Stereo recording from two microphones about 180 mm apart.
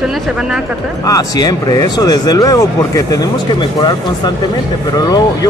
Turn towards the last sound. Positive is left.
turn(degrees=20)  # may be behind; listen again after turning